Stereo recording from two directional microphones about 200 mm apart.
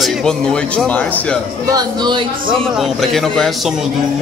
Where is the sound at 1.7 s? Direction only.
20° right (ahead or behind).